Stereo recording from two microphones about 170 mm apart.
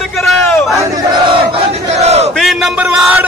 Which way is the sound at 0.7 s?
30° right (ahead or behind).